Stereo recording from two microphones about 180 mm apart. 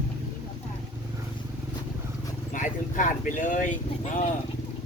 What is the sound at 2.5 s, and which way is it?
Speech, 45° left (ahead or behind).